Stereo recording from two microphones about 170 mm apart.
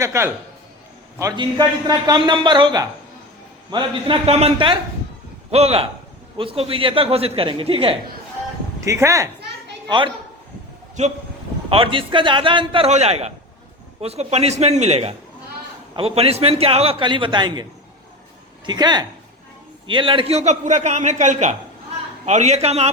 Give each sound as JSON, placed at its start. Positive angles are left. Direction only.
{"t": 0.0, "sound": "a man's voice", "side_deg": -15}
{"t": 8.8, "sound": "speech", "side_deg": -15}
{"t": 11.7, "sound": "a man's voice", "side_deg": -30}